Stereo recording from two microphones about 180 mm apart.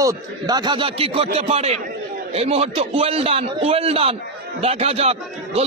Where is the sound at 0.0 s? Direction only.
20° right (ahead or behind).